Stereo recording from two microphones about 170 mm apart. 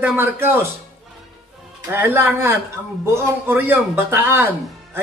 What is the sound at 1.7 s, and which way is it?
A man's voice, 15° right (ahead or behind).